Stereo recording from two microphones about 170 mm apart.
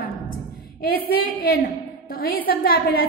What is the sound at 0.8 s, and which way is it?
A woman's voice, 60° left (ahead or behind).